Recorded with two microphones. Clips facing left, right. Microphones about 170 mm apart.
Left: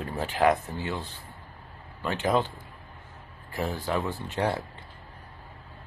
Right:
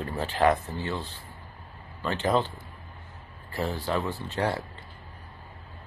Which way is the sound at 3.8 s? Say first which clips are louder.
Even; 5° left (ahead or behind).